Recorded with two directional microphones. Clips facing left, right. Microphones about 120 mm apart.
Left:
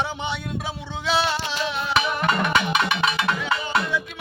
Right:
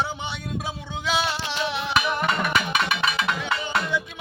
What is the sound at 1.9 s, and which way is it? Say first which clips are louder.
Music: left 2 dB; centre (ahead or behind).